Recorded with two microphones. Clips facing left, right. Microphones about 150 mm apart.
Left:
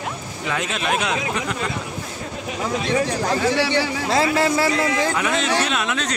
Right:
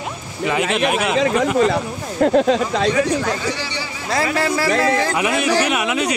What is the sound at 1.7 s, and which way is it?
Speech, 85° right.